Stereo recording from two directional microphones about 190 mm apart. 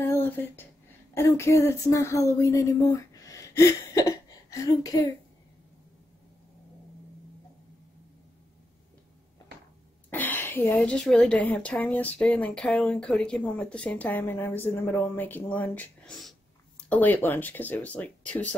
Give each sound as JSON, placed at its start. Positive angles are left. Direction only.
{"t": 0.0, "sound": "a sound", "side_deg": 10}
{"t": 1.1, "sound": "a woman's voice", "side_deg": 15}
{"t": 10.0, "sound": "a woman's voice", "side_deg": 10}